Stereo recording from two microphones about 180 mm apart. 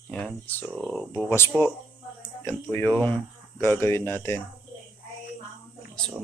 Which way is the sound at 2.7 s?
10° left (ahead or behind).